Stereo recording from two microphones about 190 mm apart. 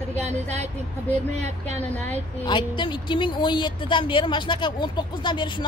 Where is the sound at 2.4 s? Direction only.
25° left (ahead or behind).